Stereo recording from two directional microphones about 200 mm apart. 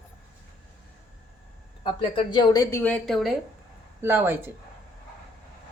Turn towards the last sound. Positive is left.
turn(degrees=-10)  # may be behind; listen again after turning